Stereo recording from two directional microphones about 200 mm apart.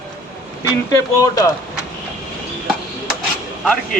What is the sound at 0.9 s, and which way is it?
Speech, 20° left (ahead or behind).